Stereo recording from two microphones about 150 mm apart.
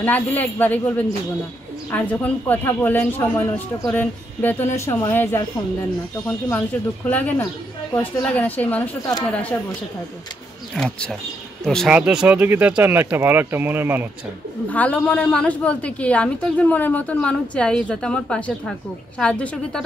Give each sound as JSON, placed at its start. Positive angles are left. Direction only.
{"t": 0.0, "sound": "a woman's voice", "side_deg": 10}
{"t": 7.1, "sound": "a woman's voice", "side_deg": 10}
{"t": 10.7, "sound": "speech", "side_deg": 5}
{"t": 14.7, "sound": "a woman's voice", "side_deg": 10}